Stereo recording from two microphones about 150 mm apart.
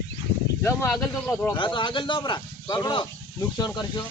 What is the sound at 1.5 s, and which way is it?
Speech, 35° left (ahead or behind).